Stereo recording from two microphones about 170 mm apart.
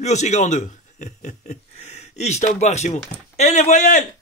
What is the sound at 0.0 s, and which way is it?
A man's voice, 40° left (ahead or behind).